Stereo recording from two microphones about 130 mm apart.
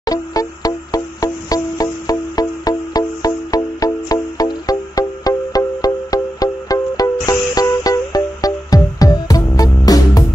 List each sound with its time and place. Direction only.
0.0 s music: 30° left (ahead or behind)